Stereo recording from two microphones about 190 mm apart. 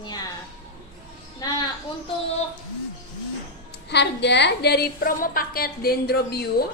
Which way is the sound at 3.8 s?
65° left (ahead or behind).